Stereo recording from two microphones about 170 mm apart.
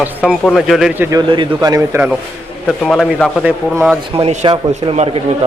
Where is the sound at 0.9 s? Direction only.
10° right (ahead or behind).